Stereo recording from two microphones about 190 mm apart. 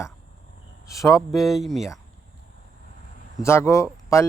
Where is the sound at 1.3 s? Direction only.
Centre (ahead or behind).